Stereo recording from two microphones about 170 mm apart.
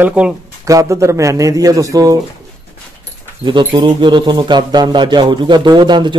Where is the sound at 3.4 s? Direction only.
30° right (ahead or behind).